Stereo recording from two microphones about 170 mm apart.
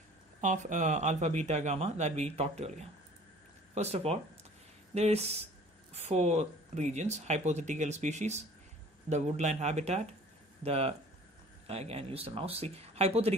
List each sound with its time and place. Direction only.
0.4 s speech: 45° right (ahead or behind)